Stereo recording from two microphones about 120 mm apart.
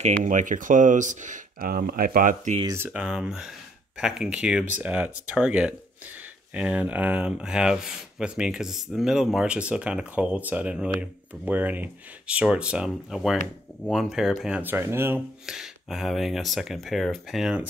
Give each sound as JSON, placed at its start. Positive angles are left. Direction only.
{"t": 0.0, "sound": "speech", "side_deg": -90}
{"t": 2.8, "sound": "speech", "side_deg": -10}
{"t": 14.6, "sound": "speech", "side_deg": -15}
{"t": 15.4, "sound": "speech", "side_deg": -5}